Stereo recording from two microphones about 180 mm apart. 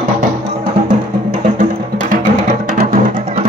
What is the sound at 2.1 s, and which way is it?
Music, 50° right (ahead or behind).